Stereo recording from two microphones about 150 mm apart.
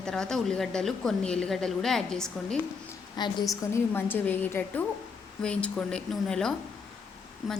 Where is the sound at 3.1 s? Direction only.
30° left (ahead or behind).